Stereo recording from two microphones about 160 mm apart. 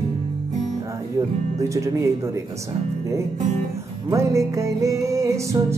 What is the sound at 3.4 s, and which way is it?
Music, 50° right (ahead or behind).